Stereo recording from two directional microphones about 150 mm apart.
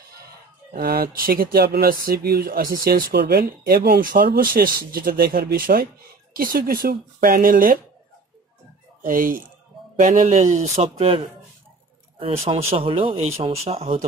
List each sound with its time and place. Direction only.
0.7 s speech: 90° right; by 7.8 s 70° right (ahead or behind)
9.0 s speech: 65° right (ahead or behind)
9.9 s speech: 55° right (ahead or behind)